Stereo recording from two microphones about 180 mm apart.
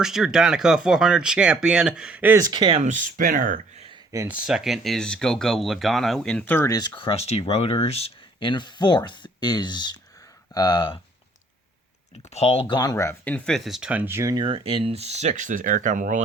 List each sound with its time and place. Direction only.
0.0 s speech: centre (ahead or behind)
2.5 s speech: 25° right (ahead or behind); by 3.8 s 50° right (ahead or behind)
4.1 s speech: 15° right (ahead or behind)
4.4 s speech: 5° right (ahead or behind); by 10.9 s 25° left (ahead or behind)
12.3 s speech: 35° left (ahead or behind); by 16.2 s 45° right (ahead or behind)